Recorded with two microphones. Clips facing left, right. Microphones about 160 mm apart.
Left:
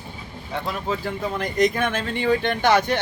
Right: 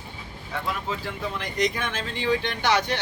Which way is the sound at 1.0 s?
50° left (ahead or behind).